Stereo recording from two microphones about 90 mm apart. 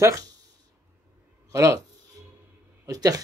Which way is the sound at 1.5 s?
35° right (ahead or behind).